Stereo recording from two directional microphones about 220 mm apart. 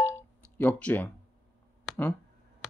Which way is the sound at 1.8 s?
10° left (ahead or behind).